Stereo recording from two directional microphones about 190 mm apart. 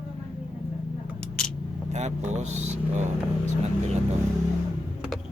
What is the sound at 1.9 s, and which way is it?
Speech, 40° right (ahead or behind).